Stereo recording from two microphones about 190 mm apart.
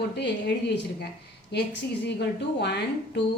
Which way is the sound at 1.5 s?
65° left (ahead or behind).